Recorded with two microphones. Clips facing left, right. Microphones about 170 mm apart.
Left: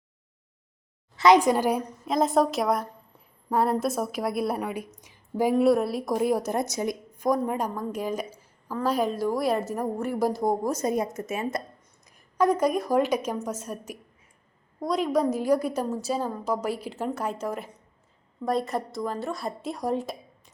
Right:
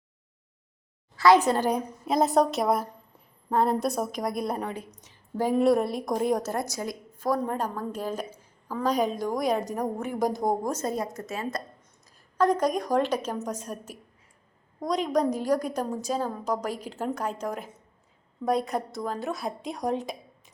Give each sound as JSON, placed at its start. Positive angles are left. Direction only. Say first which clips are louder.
{"t": 1.1, "sound": "a woman's voice", "louder": "left 1 dB", "side_deg": 20}
{"t": 2.0, "sound": "a woman's voice", "louder": "even", "side_deg": 0}
{"t": 6.5, "sound": "a woman's voice", "louder": "left 3 dB", "side_deg": 20}
{"t": 10.7, "sound": "a woman's voice", "louder": "left 3 dB", "side_deg": 15}
{"t": 12.4, "sound": "a woman's voice", "louder": "left 1 dB", "side_deg": 10}
{"t": 17.0, "sound": "a woman's voice", "louder": "right 2 dB", "side_deg": -5}